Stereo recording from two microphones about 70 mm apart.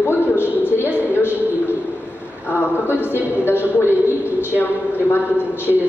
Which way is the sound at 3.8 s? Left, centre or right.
Right.